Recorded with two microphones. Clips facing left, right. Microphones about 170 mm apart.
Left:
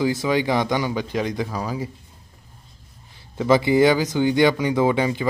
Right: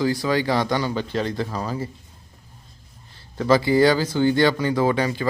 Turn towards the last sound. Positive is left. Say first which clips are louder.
# left 1 dB
turn(degrees=20)  # may be behind; listen again after turning